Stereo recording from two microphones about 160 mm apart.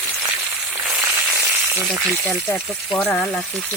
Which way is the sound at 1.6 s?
20° right (ahead or behind).